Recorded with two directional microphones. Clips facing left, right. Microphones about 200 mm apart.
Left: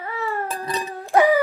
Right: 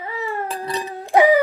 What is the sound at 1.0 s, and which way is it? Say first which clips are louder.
Music: right 2 dB; 15° right (ahead or behind).